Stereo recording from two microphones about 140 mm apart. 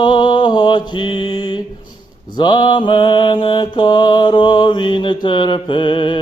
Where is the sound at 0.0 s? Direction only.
35° left (ahead or behind).